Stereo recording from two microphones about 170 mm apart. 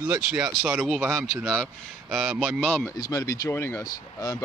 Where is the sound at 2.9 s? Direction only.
20° left (ahead or behind).